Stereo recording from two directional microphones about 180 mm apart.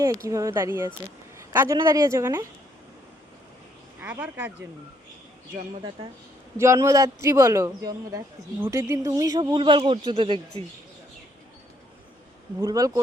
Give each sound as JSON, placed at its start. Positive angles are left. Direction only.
{"t": 0.3, "sound": "a man's voice", "side_deg": -20}
{"t": 4.0, "sound": "a man's voice", "side_deg": -10}
{"t": 5.5, "sound": "speech", "side_deg": -25}
{"t": 6.6, "sound": "a man's voice", "side_deg": -15}
{"t": 12.5, "sound": "speech", "side_deg": -20}